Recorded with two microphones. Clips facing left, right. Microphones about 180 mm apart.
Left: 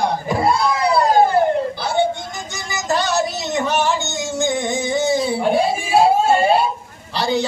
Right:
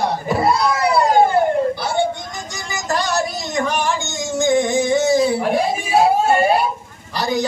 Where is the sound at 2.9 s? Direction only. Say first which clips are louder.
Left 1 dB; centre (ahead or behind).